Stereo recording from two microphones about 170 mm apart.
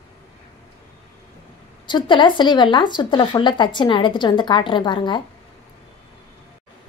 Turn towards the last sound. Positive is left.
turn(degrees=25)  # may be behind; listen again after turning